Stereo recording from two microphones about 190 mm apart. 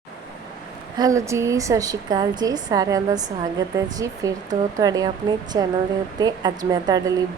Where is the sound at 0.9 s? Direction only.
20° right (ahead or behind).